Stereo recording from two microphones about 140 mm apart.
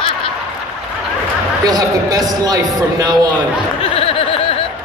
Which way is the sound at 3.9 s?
45° left (ahead or behind).